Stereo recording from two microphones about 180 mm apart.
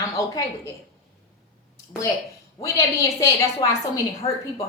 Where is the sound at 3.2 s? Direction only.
20° left (ahead or behind).